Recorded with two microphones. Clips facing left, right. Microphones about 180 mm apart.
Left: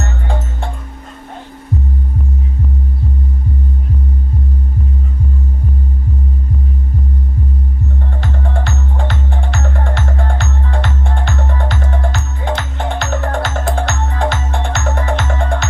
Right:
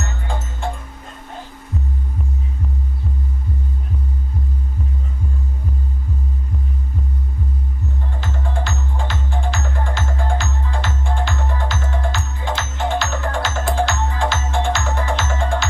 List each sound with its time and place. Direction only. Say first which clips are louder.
0.0 s music: left 5 dB; 60° left (ahead or behind)
8.2 s music: left 3 dB; 60° left (ahead or behind)